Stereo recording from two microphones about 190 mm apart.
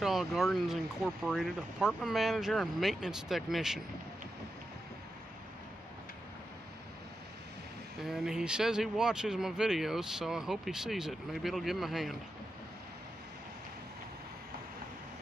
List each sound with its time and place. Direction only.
0.0 s speech: centre (ahead or behind)
8.0 s speech: 5° right (ahead or behind)